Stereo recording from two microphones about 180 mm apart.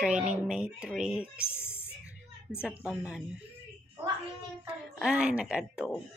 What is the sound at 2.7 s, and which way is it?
Speech, 10° right (ahead or behind).